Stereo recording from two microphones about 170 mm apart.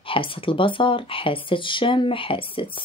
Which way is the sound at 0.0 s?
30° left (ahead or behind).